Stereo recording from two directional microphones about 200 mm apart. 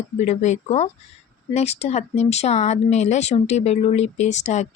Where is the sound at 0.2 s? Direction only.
35° left (ahead or behind).